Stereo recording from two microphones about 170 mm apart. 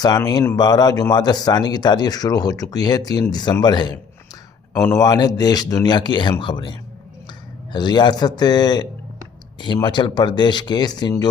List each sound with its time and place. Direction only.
0.0 s speech: 25° left (ahead or behind)